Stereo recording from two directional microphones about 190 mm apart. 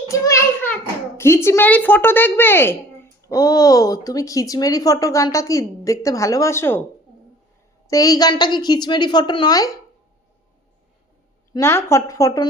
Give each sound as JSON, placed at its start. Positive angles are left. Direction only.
{"t": 0.1, "sound": "a child's voice", "side_deg": 15}
{"t": 7.9, "sound": "a woman's voice", "side_deg": 20}
{"t": 11.5, "sound": "speech", "side_deg": 15}